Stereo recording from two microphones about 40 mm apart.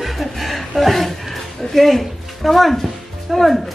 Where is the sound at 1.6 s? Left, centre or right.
Centre.